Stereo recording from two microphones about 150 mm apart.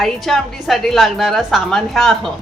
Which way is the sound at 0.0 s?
Centre (ahead or behind).